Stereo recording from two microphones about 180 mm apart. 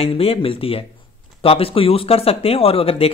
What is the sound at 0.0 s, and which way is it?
Speech, 30° left (ahead or behind).